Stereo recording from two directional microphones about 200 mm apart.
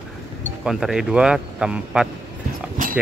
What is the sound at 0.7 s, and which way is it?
Speech, centre (ahead or behind).